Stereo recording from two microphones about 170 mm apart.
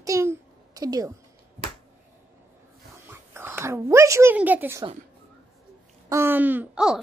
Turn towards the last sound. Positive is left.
turn(degrees=-5)  # may be behind; listen again after turning